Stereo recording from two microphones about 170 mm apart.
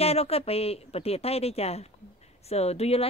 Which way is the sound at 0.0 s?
35° left (ahead or behind).